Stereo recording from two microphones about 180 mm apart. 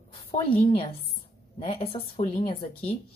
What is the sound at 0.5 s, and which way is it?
A woman's voice, 30° left (ahead or behind).